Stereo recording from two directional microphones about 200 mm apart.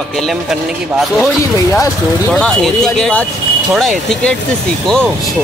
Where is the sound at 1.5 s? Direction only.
15° left (ahead or behind).